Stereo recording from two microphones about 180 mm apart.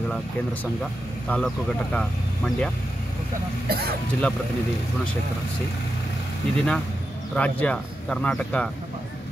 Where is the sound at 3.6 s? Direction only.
60° right (ahead or behind).